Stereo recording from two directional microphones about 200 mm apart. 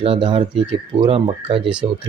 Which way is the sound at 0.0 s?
25° right (ahead or behind).